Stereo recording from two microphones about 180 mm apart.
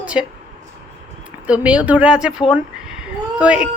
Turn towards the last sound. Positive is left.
turn(degrees=-5)  # may be behind; listen again after turning